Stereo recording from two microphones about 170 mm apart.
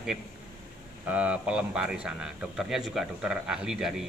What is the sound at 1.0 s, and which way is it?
A man's voice, 10° right (ahead or behind).